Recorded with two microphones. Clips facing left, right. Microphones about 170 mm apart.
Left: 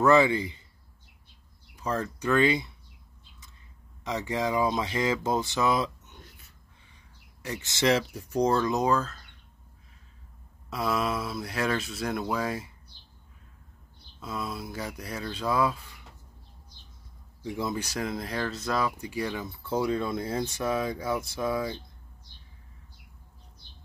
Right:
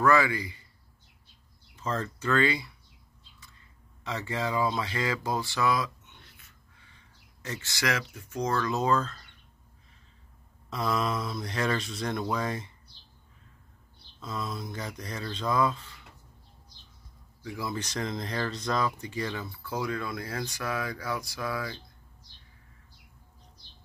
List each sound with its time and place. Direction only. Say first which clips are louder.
0.0 s speech: left 3 dB; 25° left (ahead or behind)
1.8 s speech: left 2 dB; 10° left (ahead or behind)
4.0 s speech: left 3 dB; 15° left (ahead or behind)
6.0 s a sound: left 5 dB; 40° left (ahead or behind)
7.4 s speech: left 6 dB; 15° left (ahead or behind)
10.7 s speech: left 1 dB; 5° left (ahead or behind)
14.2 s speech: left 1 dB; 10° left (ahead or behind)
17.4 s speech: left 4 dB; 25° left (ahead or behind)
17.7 s speech: left 1 dB; 10° left (ahead or behind)